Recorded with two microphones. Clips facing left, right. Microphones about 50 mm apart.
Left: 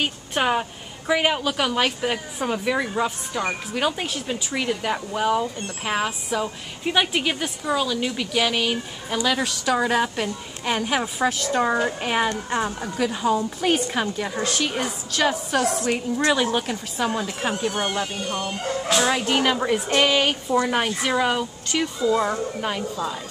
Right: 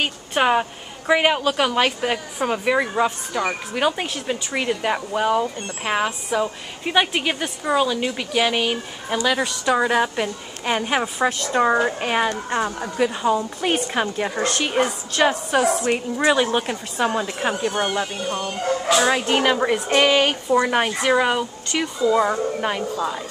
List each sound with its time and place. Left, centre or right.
0.0 s a woman's voice: centre
11.1 s a woman's voice: centre
14.0 s a woman's voice: right
15.1 s speech: centre